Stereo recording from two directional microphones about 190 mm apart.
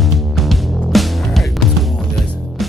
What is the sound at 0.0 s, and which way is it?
Music, centre (ahead or behind).